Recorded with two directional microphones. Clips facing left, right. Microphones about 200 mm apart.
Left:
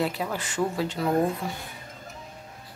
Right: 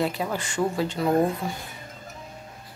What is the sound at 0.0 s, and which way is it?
Speech, 5° left (ahead or behind).